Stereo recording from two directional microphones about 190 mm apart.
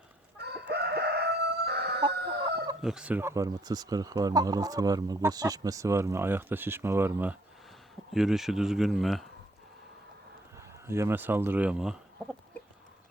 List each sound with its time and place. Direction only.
0.3 s crowing: 60° right (ahead or behind)
2.8 s speech: 5° right (ahead or behind)
10.6 s speech: 15° right (ahead or behind)